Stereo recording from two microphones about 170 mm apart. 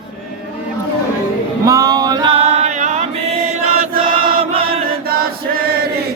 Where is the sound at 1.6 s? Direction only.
20° right (ahead or behind); by 3.1 s 45° right (ahead or behind).